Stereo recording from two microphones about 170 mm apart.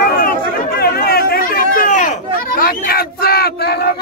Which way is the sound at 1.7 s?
50° left (ahead or behind).